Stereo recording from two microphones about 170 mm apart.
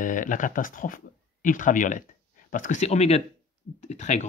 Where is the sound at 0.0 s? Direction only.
50° left (ahead or behind).